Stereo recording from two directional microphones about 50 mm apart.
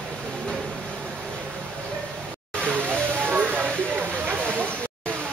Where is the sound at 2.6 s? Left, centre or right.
Right.